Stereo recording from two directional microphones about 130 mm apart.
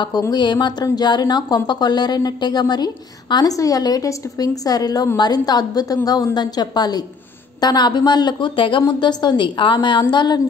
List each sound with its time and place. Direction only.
0.2 s a woman's voice: 35° left (ahead or behind)